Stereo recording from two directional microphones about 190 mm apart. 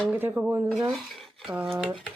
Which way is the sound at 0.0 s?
10° right (ahead or behind).